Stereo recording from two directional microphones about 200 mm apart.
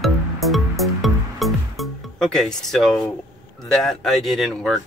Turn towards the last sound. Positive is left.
turn(degrees=0)  # may be behind; listen again after turning